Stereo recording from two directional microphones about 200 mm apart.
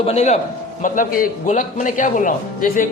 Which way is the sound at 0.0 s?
35° left (ahead or behind).